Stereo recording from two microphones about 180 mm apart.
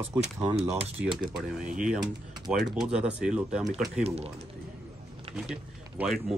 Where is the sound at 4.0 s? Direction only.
35° right (ahead or behind).